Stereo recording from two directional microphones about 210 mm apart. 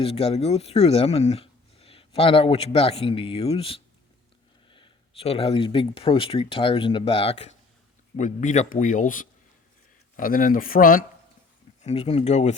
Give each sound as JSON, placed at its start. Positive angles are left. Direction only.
{"t": 0.0, "sound": "speech", "side_deg": 25}
{"t": 11.8, "sound": "speech", "side_deg": 30}